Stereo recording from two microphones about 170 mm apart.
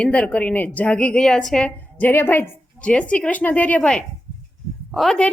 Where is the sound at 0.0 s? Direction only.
10° left (ahead or behind).